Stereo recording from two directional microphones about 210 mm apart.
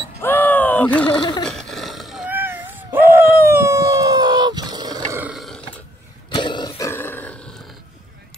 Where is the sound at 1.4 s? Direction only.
Centre (ahead or behind); by 5.2 s 20° right (ahead or behind).